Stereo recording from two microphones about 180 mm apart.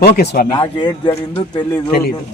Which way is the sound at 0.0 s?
60° left (ahead or behind).